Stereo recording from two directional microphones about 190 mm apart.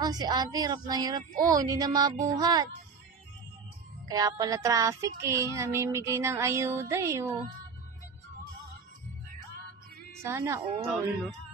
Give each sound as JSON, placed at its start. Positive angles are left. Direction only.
{"t": 0.0, "sound": "speech", "side_deg": -20}
{"t": 4.1, "sound": "child singing", "side_deg": -20}
{"t": 10.2, "sound": "child singing", "side_deg": -15}